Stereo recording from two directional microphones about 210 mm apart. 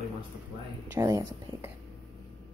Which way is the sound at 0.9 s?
15° right (ahead or behind).